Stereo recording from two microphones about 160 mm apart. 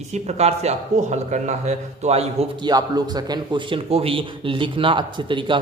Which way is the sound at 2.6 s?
25° right (ahead or behind).